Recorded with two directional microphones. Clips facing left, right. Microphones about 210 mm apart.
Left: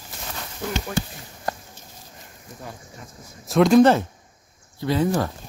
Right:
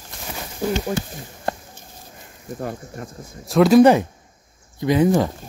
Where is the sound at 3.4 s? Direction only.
Centre (ahead or behind).